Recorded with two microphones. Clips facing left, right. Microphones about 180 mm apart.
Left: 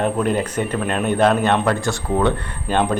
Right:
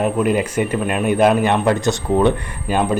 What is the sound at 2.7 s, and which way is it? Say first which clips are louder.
Speech: right 1 dB; 5° right (ahead or behind).